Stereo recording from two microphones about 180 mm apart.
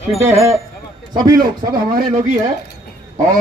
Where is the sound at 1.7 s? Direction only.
55° right (ahead or behind).